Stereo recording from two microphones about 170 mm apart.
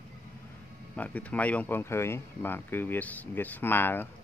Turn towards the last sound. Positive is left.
turn(degrees=10)  # may be behind; listen again after turning